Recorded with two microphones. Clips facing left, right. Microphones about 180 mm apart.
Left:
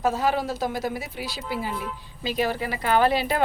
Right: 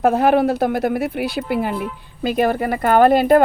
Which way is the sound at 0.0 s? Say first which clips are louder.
Right 9 dB; 60° right (ahead or behind).